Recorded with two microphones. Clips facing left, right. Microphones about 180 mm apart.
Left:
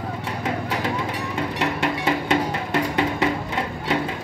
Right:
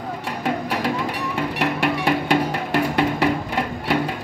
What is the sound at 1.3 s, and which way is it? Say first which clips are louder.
Music: right 2 dB; 65° right (ahead or behind).